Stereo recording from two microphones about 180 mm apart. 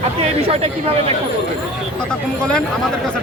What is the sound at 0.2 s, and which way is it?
Speech, 35° right (ahead or behind).